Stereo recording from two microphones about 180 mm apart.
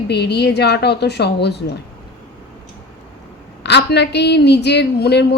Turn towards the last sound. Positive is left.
turn(degrees=65)  # may be behind; listen again after turning